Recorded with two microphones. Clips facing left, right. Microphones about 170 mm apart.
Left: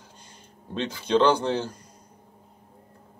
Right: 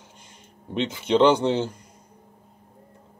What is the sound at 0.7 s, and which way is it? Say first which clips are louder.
Speech: right 2 dB; 20° right (ahead or behind).